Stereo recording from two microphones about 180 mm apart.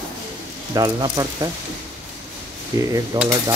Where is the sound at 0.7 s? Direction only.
20° right (ahead or behind).